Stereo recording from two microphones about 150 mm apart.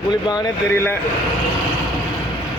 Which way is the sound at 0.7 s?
15° left (ahead or behind).